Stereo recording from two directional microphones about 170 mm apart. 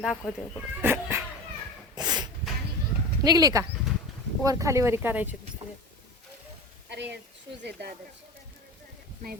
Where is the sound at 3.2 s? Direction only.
20° right (ahead or behind).